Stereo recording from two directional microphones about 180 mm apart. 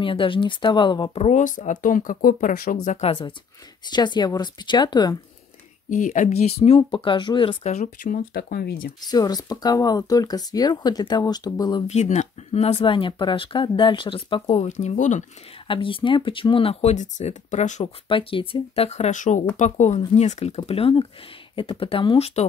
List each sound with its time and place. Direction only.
0.0 s speech: 30° left (ahead or behind)
5.9 s speech: 45° left (ahead or behind); by 7.7 s 25° left (ahead or behind)
7.7 s speech: 45° left (ahead or behind)
9.0 s speech: 20° left (ahead or behind)
11.9 s speech: 40° left (ahead or behind)
15.6 s speech: 30° left (ahead or behind)
18.1 s speech: 30° left (ahead or behind)